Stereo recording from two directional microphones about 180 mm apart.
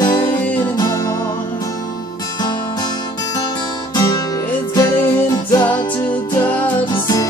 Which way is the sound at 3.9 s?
25° left (ahead or behind).